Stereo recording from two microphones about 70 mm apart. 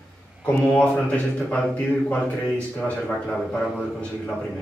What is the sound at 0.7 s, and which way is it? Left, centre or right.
Speech, centre.